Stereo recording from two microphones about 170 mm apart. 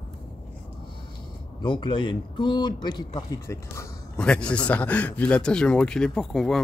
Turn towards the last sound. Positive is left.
turn(degrees=0)  # may be behind; listen again after turning